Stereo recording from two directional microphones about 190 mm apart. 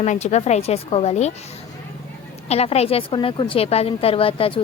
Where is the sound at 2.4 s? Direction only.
35° left (ahead or behind).